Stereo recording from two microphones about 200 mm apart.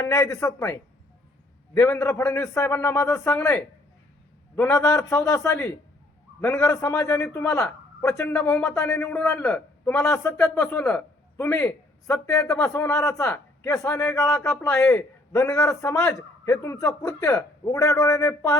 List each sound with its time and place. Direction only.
0.0 s a man's voice: 15° left (ahead or behind)
8.4 s speech: 5° left (ahead or behind)
9.0 s a man's voice: 15° left (ahead or behind)